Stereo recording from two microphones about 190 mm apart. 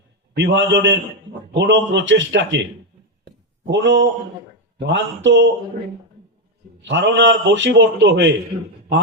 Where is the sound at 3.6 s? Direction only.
70° right (ahead or behind).